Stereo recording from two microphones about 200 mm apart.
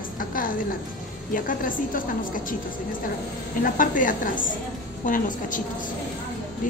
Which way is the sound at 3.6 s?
40° left (ahead or behind).